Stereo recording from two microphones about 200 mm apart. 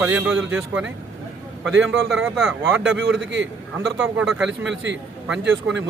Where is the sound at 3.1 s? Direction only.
60° right (ahead or behind).